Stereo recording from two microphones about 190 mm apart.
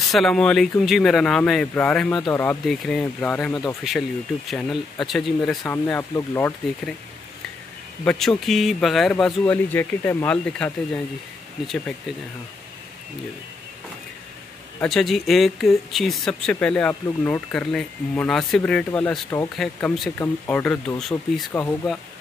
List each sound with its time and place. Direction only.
0.0 s speech: centre (ahead or behind)
2.1 s speech: 20° left (ahead or behind)
2.4 s speech: centre (ahead or behind)
8.0 s speech: 5° left (ahead or behind)
14.8 s speech: centre (ahead or behind)